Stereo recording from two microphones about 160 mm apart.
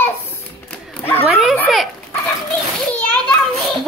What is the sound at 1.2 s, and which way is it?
Speech, 5° right (ahead or behind).